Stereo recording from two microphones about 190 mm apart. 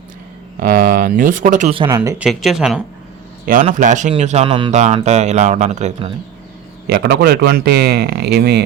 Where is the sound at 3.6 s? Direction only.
40° right (ahead or behind).